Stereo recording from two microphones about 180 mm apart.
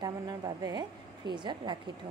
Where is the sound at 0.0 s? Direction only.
20° right (ahead or behind).